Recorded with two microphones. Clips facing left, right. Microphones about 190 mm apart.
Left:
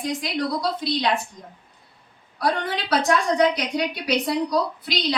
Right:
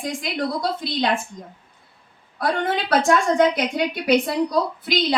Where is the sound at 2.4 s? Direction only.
50° right (ahead or behind).